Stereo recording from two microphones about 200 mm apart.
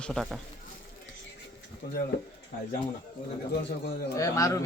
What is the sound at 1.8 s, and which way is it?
Speech, 55° left (ahead or behind).